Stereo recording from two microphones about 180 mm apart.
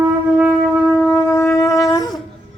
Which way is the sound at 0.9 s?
10° left (ahead or behind).